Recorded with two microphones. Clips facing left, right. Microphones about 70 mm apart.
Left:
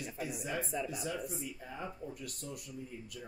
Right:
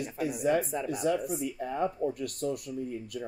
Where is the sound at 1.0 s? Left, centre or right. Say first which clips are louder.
Right 10 dB; right.